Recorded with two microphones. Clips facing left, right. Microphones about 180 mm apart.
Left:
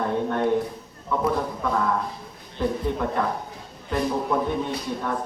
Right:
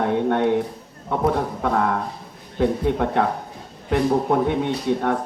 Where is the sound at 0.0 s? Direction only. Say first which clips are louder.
Right 4 dB; 70° right (ahead or behind).